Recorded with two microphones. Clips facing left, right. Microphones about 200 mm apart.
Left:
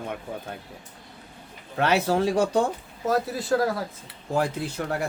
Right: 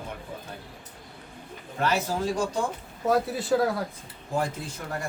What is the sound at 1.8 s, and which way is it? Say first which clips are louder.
Speech: left 5 dB; 70° left (ahead or behind).